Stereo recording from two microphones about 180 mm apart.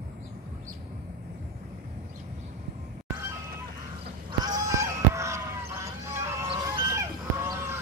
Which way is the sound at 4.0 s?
25° right (ahead or behind).